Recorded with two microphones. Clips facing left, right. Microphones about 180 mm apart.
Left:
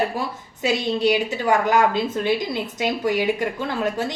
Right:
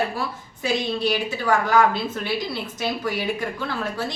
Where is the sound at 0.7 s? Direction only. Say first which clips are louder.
Left 3 dB; 15° left (ahead or behind).